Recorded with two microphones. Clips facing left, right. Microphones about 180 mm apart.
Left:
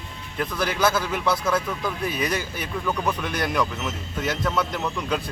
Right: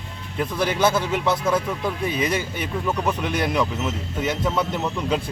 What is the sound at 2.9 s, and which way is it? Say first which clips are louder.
A man's voice: right 2 dB; 10° right (ahead or behind).